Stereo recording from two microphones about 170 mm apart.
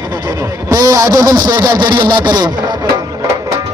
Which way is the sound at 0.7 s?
20° right (ahead or behind).